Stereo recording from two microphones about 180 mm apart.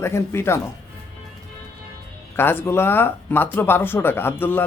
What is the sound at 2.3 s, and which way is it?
Speech, 10° left (ahead or behind).